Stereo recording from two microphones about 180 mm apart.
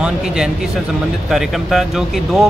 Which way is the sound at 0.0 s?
5° right (ahead or behind).